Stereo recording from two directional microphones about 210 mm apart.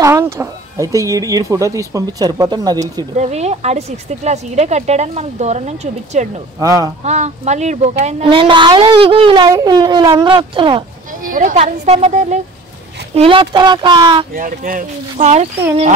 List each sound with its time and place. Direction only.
0.0 s speech: 15° right (ahead or behind)
3.2 s speech: 30° right (ahead or behind)
6.6 s speech: 15° right (ahead or behind)
7.1 s a woman's voice: 35° right (ahead or behind)
11.2 s a woman's voice: 40° right (ahead or behind); by 14.2 s 20° right (ahead or behind)
14.3 s speech: 40° right (ahead or behind)